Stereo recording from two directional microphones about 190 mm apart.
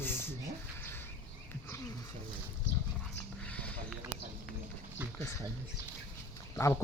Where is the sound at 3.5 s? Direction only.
5° left (ahead or behind).